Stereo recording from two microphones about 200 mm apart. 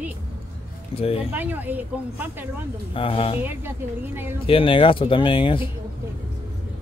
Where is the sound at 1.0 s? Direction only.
30° left (ahead or behind).